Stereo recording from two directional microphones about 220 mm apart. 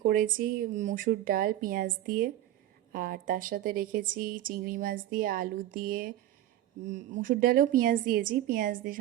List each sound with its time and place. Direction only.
0.0 s speech: 40° right (ahead or behind)